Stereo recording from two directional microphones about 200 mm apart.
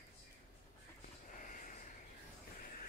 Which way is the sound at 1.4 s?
40° left (ahead or behind).